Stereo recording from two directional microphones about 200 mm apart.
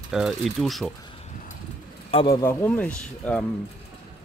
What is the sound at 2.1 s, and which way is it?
Speech, 25° left (ahead or behind).